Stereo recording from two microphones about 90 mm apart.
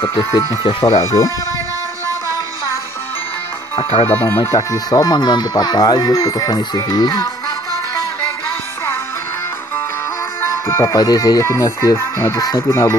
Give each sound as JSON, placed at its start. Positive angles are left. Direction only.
{"t": 0.2, "sound": "speech", "side_deg": 40}
{"t": 0.7, "sound": "speech", "side_deg": 80}
{"t": 0.9, "sound": "speech", "side_deg": 35}
{"t": 4.1, "sound": "speech", "side_deg": 20}
{"t": 4.5, "sound": "speech", "side_deg": 40}
{"t": 10.4, "sound": "speech", "side_deg": 35}
{"t": 12.5, "sound": "speech", "side_deg": 30}